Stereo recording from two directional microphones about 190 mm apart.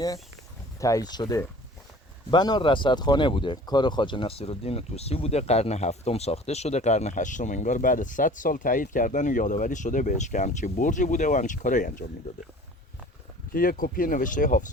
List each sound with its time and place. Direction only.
0.8 s speech: 15° left (ahead or behind); by 12.0 s 45° left (ahead or behind)
13.5 s speech: 50° left (ahead or behind)